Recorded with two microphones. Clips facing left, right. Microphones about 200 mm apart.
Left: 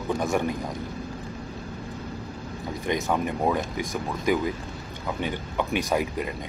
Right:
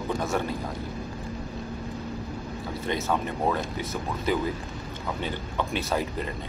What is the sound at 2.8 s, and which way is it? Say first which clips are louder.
Speech: left 2 dB; 15° left (ahead or behind).